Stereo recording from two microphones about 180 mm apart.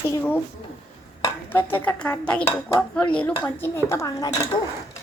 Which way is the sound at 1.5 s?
10° left (ahead or behind).